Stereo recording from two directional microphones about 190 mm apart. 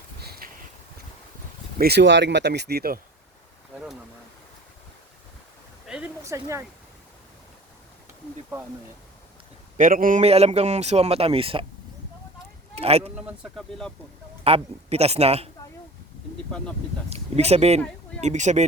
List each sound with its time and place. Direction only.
0.2 s a sound: 55° right (ahead or behind)
1.8 s speech: 60° right (ahead or behind)
5.9 s a sound: 10° right (ahead or behind)
9.7 s a man's voice: 45° right (ahead or behind); by 11.6 s 30° right (ahead or behind)
12.7 s a man's voice: 30° right (ahead or behind)
13.2 s speech: centre (ahead or behind)
14.4 s a man's voice: 35° right (ahead or behind)
17.1 s a man's voice: 35° right (ahead or behind)